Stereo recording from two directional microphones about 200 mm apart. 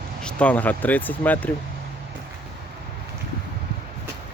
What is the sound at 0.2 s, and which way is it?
Speech, 5° left (ahead or behind).